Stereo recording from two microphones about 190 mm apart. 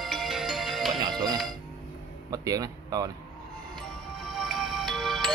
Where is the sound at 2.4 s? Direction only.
20° right (ahead or behind).